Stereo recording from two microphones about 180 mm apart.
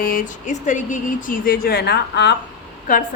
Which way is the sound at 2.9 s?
50° left (ahead or behind).